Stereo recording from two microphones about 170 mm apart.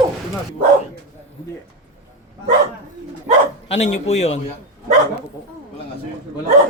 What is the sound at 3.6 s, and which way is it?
Speech, 40° left (ahead or behind).